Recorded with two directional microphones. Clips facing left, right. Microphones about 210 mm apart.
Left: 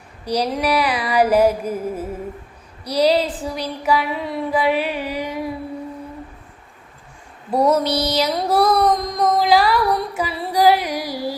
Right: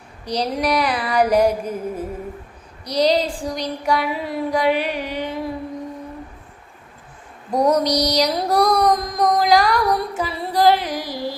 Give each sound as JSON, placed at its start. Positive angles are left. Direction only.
{"t": 0.3, "sound": "music", "side_deg": 10}
{"t": 2.8, "sound": "a sound", "side_deg": 10}
{"t": 7.5, "sound": "mantra", "side_deg": 5}
{"t": 9.9, "sound": "music", "side_deg": 0}